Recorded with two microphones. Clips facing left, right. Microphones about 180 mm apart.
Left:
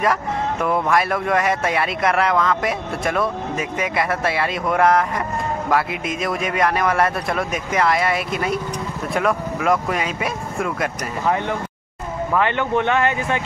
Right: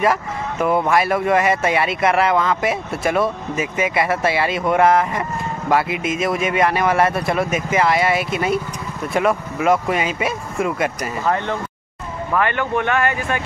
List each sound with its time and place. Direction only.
0.0 s speech: 5° right (ahead or behind)
12.4 s speech: 20° left (ahead or behind)